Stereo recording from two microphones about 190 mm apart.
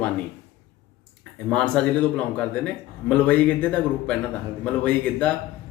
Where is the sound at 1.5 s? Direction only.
5° left (ahead or behind).